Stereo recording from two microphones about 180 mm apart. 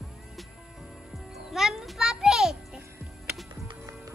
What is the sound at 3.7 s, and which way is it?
Music, 20° right (ahead or behind).